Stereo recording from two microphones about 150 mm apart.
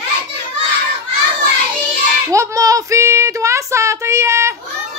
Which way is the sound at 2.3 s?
20° right (ahead or behind).